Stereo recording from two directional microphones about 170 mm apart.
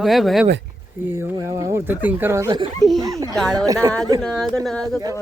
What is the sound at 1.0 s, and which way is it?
Speech, 10° right (ahead or behind).